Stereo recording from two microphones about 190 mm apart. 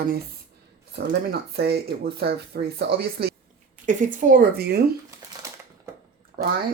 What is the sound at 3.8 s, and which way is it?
Speech, 45° right (ahead or behind).